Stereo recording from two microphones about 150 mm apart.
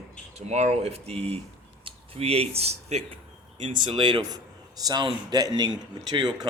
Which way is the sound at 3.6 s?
35° right (ahead or behind).